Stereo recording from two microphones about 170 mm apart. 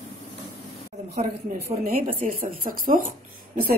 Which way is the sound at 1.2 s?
40° right (ahead or behind).